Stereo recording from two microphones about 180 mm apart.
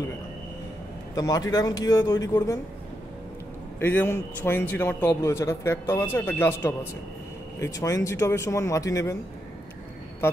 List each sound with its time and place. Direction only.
1.1 s speech: 20° left (ahead or behind)
3.8 s a man's voice: 10° left (ahead or behind)